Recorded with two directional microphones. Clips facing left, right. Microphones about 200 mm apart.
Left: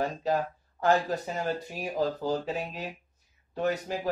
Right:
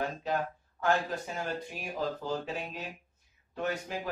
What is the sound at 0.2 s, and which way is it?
Speech, 40° left (ahead or behind).